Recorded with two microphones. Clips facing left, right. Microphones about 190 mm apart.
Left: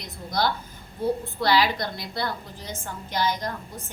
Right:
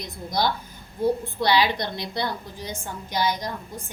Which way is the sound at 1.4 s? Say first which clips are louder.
Even; 20° right (ahead or behind).